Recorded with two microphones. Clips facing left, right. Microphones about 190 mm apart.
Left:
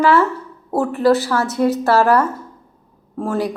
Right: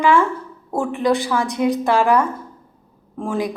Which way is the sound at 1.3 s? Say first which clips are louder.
Left 2 dB; 15° right (ahead or behind).